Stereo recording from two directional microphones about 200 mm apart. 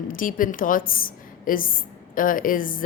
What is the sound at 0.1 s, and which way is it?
A woman's voice, 45° left (ahead or behind).